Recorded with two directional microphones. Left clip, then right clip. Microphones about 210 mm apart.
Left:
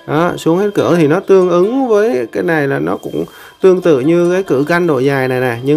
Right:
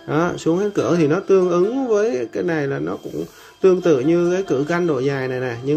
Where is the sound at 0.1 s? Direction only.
20° left (ahead or behind).